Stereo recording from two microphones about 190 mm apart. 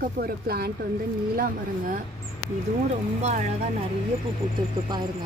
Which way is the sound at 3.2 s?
35° right (ahead or behind).